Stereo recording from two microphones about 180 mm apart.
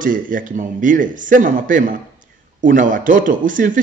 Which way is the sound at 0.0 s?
50° right (ahead or behind).